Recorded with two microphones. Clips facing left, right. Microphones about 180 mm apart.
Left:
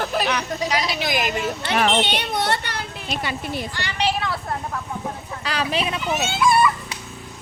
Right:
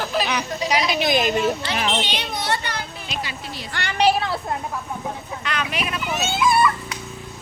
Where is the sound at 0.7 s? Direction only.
15° right (ahead or behind).